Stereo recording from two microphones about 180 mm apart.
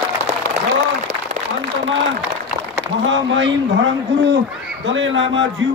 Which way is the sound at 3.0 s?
90° right.